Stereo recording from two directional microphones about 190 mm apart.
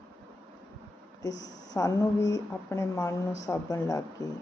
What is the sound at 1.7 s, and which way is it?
Speech, 20° left (ahead or behind).